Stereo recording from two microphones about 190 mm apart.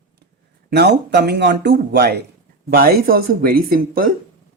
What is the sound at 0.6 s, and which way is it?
A man's voice, 60° right (ahead or behind).